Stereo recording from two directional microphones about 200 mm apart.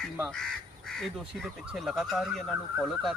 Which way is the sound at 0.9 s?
Centre (ahead or behind).